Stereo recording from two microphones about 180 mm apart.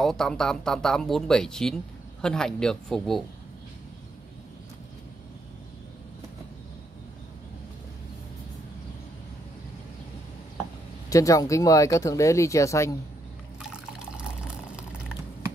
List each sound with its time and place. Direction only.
0.0 s speech: 5° left (ahead or behind)
11.1 s speech: 20° left (ahead or behind)
13.6 s liquid: 5° right (ahead or behind)
14.8 s a sound: 5° right (ahead or behind)